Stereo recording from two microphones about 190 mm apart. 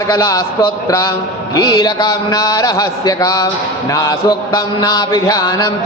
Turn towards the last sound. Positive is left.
turn(degrees=15)  # may be behind; listen again after turning